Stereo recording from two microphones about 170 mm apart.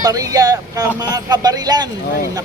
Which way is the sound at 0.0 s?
20° right (ahead or behind).